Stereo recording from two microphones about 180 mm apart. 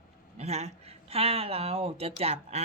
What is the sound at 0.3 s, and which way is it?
Speech, 35° right (ahead or behind).